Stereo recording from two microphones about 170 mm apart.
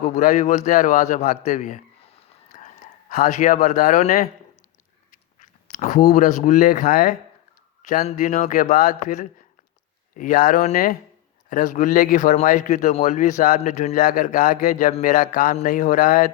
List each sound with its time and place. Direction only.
0.0 s a man's voice: 45° left (ahead or behind)